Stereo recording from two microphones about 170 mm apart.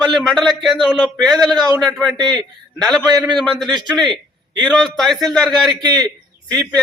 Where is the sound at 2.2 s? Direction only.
25° right (ahead or behind).